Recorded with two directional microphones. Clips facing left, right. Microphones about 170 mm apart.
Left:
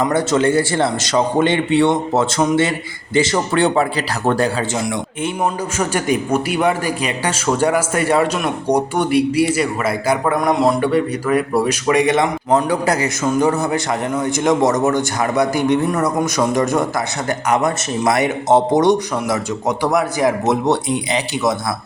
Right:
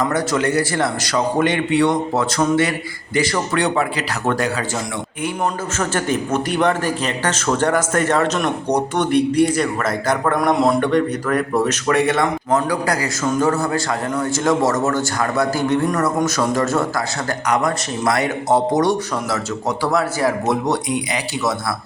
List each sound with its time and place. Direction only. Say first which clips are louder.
0.0 s a man's voice: left 3 dB; 30° left (ahead or behind)
5.7 s a man's voice: left 2 dB; 10° left (ahead or behind)